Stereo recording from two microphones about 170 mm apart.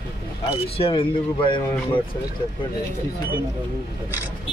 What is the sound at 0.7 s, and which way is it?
Speech, 35° left (ahead or behind).